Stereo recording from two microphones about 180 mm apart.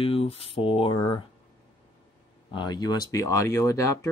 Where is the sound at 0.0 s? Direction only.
30° left (ahead or behind).